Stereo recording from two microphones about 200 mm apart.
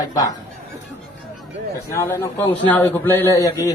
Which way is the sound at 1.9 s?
15° left (ahead or behind).